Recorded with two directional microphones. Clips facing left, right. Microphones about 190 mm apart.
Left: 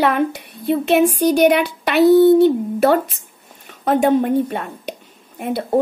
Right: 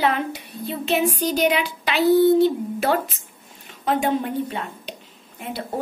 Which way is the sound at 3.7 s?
50° left (ahead or behind).